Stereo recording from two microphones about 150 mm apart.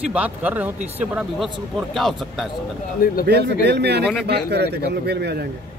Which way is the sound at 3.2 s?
90° right.